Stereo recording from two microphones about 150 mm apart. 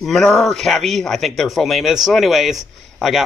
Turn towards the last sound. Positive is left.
turn(degrees=0)  # may be behind; listen again after turning